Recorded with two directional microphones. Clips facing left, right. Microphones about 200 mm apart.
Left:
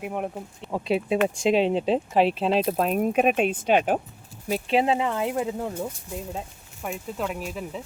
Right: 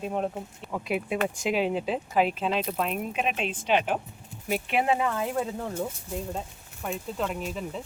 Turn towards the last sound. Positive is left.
turn(degrees=5)  # may be behind; listen again after turning